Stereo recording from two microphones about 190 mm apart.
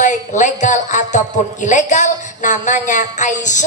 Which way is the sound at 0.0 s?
40° left (ahead or behind).